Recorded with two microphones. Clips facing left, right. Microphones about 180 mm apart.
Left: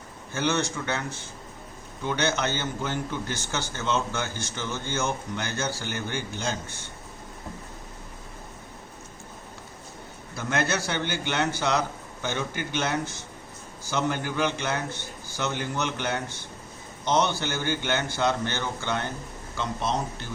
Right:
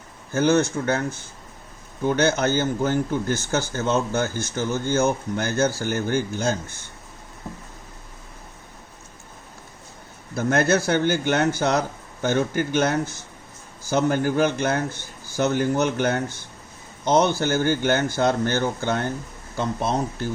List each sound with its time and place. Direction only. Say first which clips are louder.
0.3 s a man's voice: right 8 dB; 45° right (ahead or behind)
2.0 s a man's voice: right 6 dB; 50° right (ahead or behind)
10.3 s a man's voice: right 7 dB; 45° right (ahead or behind)